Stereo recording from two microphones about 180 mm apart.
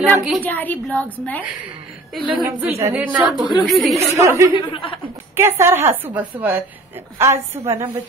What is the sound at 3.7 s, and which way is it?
Speech, centre (ahead or behind).